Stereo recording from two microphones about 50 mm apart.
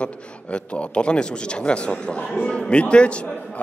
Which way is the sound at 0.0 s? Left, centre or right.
Left.